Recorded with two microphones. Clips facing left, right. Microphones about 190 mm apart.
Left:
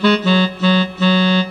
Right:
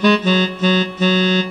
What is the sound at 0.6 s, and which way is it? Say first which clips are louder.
Music: even; 45° right (ahead or behind).